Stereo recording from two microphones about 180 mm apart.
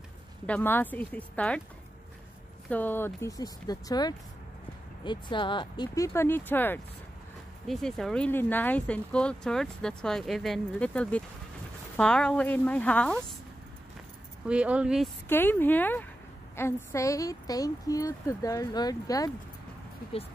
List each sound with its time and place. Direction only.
0.5 s speech: 10° left (ahead or behind)
2.7 s speech: 10° left (ahead or behind)
14.4 s speech: 5° right (ahead or behind)
15.2 s speech: 10° left (ahead or behind)